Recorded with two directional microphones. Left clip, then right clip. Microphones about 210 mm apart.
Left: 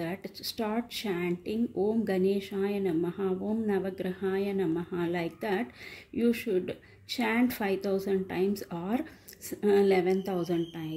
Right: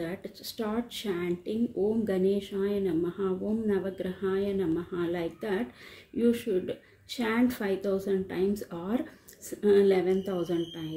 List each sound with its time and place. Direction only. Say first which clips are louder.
0.0 s speech: left 1 dB; 25° left (ahead or behind)